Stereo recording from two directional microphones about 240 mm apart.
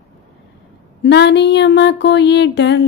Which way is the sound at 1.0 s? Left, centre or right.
Left.